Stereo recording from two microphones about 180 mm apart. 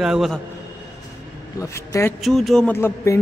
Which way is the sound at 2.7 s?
15° left (ahead or behind).